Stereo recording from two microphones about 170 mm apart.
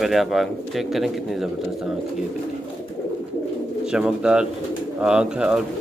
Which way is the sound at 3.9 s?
5° right (ahead or behind).